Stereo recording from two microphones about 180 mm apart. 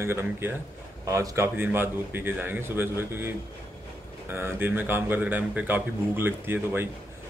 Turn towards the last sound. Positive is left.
turn(degrees=-10)  # may be behind; listen again after turning